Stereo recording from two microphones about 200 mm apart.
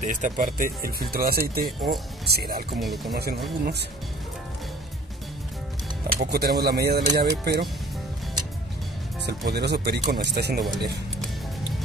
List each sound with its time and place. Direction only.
0.0 s speech: 40° right (ahead or behind)
2.8 s speech: centre (ahead or behind)
3.2 s speech: 50° right (ahead or behind)
6.0 s speech: 50° right (ahead or behind)
9.2 s speech: 55° right (ahead or behind)